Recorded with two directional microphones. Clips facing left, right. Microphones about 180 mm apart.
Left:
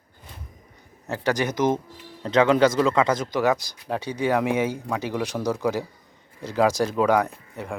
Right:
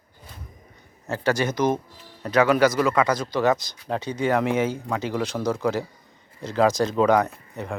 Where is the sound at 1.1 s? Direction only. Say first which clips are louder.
Right 1 dB; 15° left (ahead or behind).